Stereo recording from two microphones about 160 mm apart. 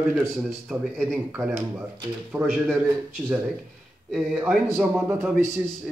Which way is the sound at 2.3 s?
10° right (ahead or behind).